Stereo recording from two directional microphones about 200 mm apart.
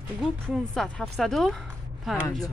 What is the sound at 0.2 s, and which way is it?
Speech, centre (ahead or behind).